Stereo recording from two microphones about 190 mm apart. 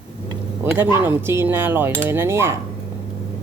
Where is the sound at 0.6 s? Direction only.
10° right (ahead or behind).